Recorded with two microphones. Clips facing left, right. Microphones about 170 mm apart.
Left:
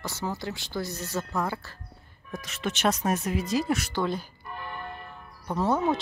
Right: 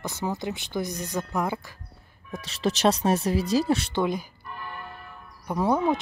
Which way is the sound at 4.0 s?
15° right (ahead or behind).